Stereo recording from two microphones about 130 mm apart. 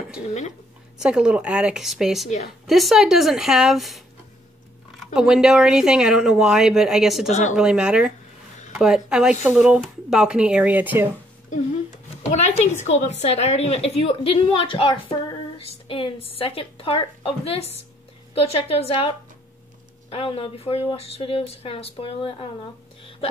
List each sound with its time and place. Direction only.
0.9 s speech: 5° right (ahead or behind)
5.0 s speech: 5° right (ahead or behind)
7.2 s speech: 60° left (ahead or behind)
7.5 s speech: 5° right (ahead or behind)
12.3 s a woman's voice: 60° left (ahead or behind)